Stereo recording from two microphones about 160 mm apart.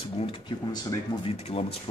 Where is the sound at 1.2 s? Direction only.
40° left (ahead or behind).